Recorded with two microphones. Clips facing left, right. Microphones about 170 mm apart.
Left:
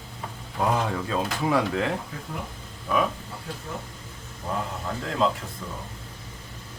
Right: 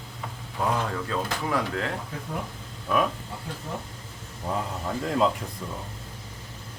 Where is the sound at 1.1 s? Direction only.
15° left (ahead or behind).